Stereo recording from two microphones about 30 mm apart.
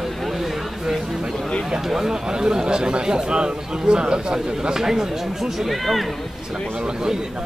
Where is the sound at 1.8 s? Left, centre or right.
Centre.